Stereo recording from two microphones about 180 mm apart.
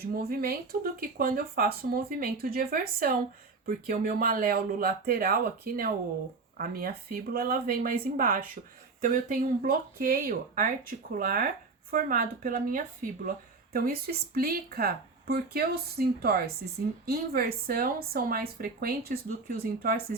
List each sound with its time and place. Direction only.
0.0 s speech: 55° right (ahead or behind)